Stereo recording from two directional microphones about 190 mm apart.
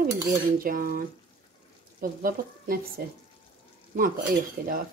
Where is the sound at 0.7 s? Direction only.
50° right (ahead or behind).